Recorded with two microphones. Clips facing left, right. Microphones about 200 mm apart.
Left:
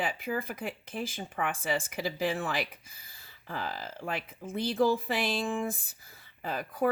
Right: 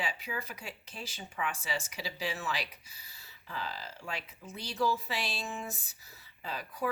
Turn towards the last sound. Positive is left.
turn(degrees=50)  # may be behind; listen again after turning